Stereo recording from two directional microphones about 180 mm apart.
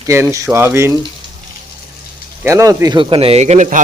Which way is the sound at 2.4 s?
20° right (ahead or behind).